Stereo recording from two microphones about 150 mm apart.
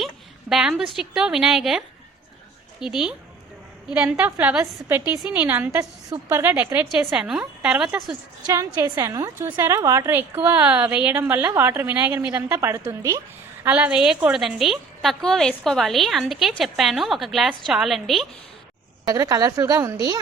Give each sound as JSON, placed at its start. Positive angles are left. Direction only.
{"t": 0.5, "sound": "a woman's voice", "side_deg": -5}
{"t": 2.8, "sound": "a woman's voice", "side_deg": -5}
{"t": 8.0, "sound": "a woman's voice", "side_deg": -25}
{"t": 13.7, "sound": "a woman's voice", "side_deg": -10}
{"t": 19.0, "sound": "a woman's voice", "side_deg": -25}